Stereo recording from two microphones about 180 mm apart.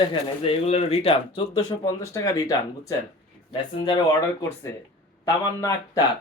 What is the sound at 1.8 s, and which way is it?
Speech, 20° left (ahead or behind).